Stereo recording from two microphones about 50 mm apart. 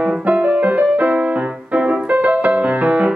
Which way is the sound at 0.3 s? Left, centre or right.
Right.